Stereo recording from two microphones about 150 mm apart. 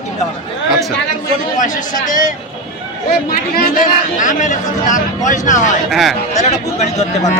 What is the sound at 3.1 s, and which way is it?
Speech, 85° left.